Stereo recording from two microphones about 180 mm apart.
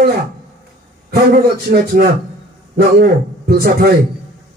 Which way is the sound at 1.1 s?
55° right (ahead or behind).